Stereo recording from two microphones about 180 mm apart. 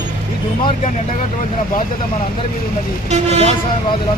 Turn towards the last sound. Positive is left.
turn(degrees=-35)  # may be behind; listen again after turning